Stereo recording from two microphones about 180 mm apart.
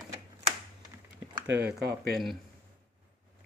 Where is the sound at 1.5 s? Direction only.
70° right (ahead or behind).